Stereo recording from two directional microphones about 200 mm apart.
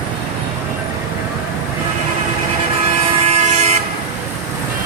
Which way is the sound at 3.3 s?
35° right (ahead or behind).